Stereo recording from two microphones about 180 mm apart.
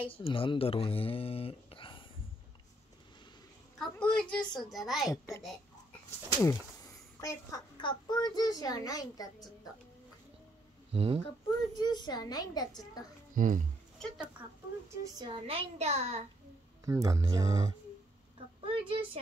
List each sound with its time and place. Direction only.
0.2 s speech: 30° left (ahead or behind)
3.7 s a child's voice: 5° left (ahead or behind)
5.1 s a child's voice: 15° left (ahead or behind)
7.2 s a child's voice: 20° left (ahead or behind)
10.9 s speech: 35° right (ahead or behind)
11.2 s a child's voice: 25° left (ahead or behind)
13.3 s speech: 45° right (ahead or behind)
13.9 s speech: centre (ahead or behind)
15.1 s a woman's voice: 30° right (ahead or behind)
16.8 s a woman's voice: 20° right (ahead or behind)